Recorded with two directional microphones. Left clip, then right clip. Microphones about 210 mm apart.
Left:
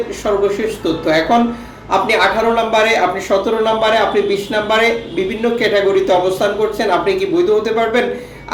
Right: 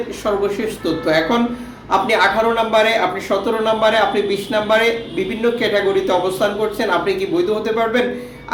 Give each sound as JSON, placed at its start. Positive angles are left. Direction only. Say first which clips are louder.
{"t": 1.0, "sound": "speech", "louder": "left 3 dB", "side_deg": -5}